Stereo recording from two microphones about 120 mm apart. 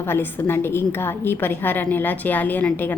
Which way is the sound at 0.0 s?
20° left (ahead or behind).